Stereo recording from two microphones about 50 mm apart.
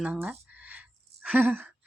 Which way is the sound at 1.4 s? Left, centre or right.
Right.